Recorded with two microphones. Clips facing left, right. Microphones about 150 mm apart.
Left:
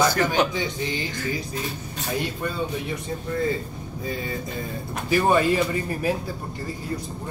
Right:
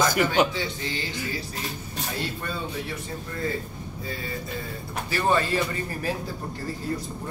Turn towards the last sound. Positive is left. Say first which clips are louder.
# left 4 dB
turn(degrees=15)  # may be behind; listen again after turning